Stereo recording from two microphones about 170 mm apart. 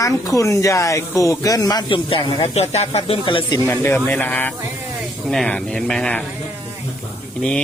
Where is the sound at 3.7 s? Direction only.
15° left (ahead or behind).